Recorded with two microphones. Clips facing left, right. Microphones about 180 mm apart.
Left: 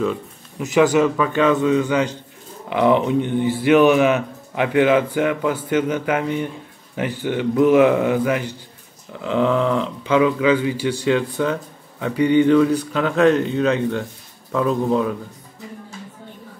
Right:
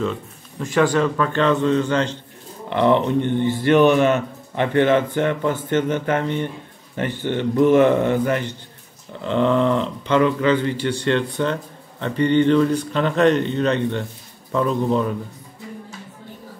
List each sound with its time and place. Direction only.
0.0 s speech: 10° left (ahead or behind)